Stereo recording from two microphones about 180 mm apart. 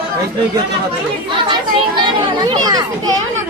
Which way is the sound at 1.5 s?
25° right (ahead or behind).